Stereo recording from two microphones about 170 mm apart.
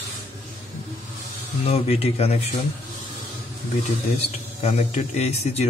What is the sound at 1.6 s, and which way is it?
Speech, 35° left (ahead or behind).